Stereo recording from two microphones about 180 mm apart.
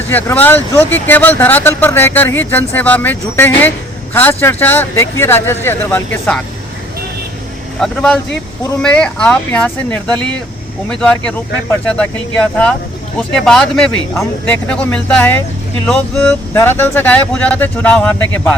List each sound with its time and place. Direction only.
0.1 s speech: 10° left (ahead or behind)
7.8 s speech: 5° left (ahead or behind)
13.1 s speech: 5° left (ahead or behind)